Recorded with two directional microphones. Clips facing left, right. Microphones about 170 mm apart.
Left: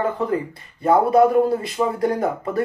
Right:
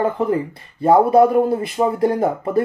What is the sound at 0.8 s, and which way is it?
Speech, 25° right (ahead or behind).